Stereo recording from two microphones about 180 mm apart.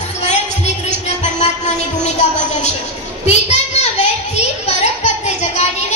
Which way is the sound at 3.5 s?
40° left (ahead or behind).